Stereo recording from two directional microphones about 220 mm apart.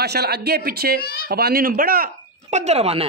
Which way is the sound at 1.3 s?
45° right (ahead or behind).